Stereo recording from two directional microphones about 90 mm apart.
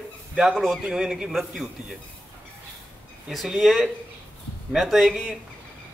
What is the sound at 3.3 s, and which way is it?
A man's voice, centre (ahead or behind).